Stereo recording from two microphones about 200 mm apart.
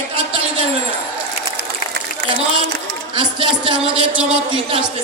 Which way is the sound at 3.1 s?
25° right (ahead or behind).